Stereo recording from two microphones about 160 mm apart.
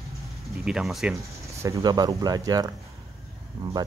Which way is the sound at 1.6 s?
20° right (ahead or behind).